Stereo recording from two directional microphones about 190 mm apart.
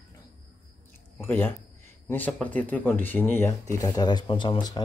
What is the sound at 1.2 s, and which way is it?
Speech, 10° left (ahead or behind).